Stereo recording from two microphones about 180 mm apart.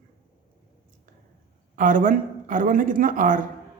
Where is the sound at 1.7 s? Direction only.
45° right (ahead or behind).